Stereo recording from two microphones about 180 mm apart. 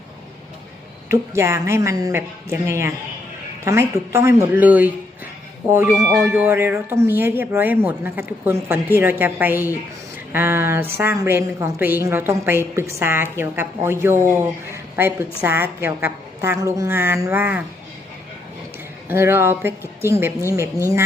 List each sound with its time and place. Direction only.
1.1 s a woman's voice: 15° right (ahead or behind)
19.0 s a woman's voice: 10° right (ahead or behind)